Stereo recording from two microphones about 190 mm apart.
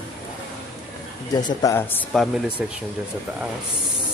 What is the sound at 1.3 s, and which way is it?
Speech, 15° left (ahead or behind).